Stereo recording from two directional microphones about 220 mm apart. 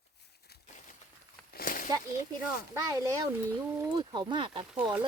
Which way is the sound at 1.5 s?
40° left (ahead or behind).